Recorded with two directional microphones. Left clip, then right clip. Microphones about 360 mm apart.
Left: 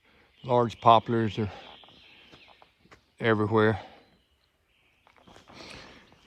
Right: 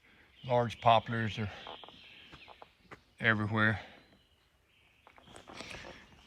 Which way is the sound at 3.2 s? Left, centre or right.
Centre.